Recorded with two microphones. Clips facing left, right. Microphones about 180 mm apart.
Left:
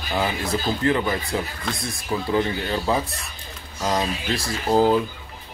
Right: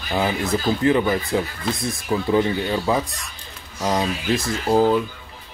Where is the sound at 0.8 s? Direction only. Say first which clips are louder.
Right 4 dB; 15° right (ahead or behind).